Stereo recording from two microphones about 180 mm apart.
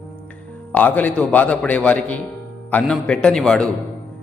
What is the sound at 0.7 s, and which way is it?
A man's voice, 10° left (ahead or behind).